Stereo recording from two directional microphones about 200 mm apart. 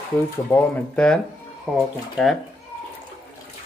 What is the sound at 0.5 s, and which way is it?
Speech, 5° left (ahead or behind).